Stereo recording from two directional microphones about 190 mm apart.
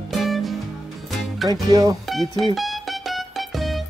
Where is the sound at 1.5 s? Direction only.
20° right (ahead or behind).